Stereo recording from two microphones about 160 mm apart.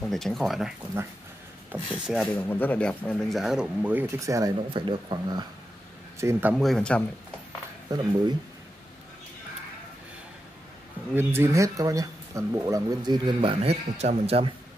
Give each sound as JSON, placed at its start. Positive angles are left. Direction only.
{"t": 0.0, "sound": "speech", "side_deg": 0}
{"t": 2.3, "sound": "speech", "side_deg": 10}
{"t": 6.1, "sound": "speech", "side_deg": -15}
{"t": 6.5, "sound": "speech", "side_deg": 5}
{"t": 7.9, "sound": "speech", "side_deg": -25}
{"t": 11.1, "sound": "speech", "side_deg": -15}